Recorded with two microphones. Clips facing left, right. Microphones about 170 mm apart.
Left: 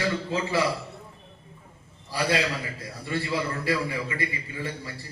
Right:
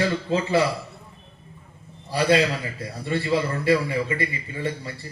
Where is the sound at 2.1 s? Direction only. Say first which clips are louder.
Right 6 dB; 25° right (ahead or behind).